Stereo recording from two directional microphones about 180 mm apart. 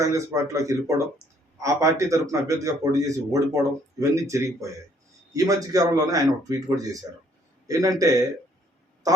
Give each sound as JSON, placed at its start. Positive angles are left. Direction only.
{"t": 0.0, "sound": "a man's voice", "side_deg": -15}